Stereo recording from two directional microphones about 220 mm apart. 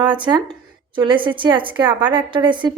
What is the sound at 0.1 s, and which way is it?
A woman's voice, 20° right (ahead or behind).